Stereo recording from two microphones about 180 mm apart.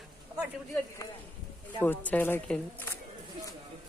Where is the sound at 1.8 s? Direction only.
10° left (ahead or behind).